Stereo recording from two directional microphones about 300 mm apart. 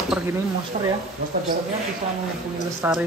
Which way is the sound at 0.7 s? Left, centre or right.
Centre.